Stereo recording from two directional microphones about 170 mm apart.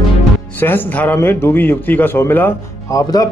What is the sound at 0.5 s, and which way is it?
A man's voice, 10° left (ahead or behind).